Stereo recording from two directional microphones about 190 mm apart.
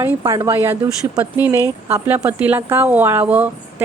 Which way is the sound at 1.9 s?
10° right (ahead or behind).